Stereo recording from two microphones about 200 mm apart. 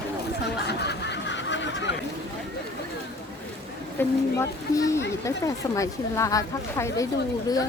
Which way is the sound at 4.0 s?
15° left (ahead or behind).